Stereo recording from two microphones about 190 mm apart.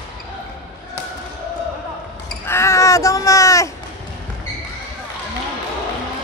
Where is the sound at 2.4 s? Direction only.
15° left (ahead or behind).